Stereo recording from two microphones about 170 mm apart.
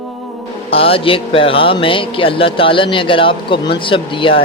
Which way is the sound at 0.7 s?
35° left (ahead or behind).